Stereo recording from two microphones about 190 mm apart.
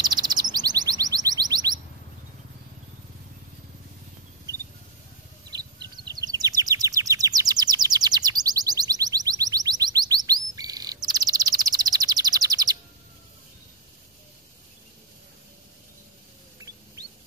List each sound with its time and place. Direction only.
0.0 s chirp: 20° right (ahead or behind)
5.8 s bird: 20° right (ahead or behind)
16.5 s rodents: 20° right (ahead or behind)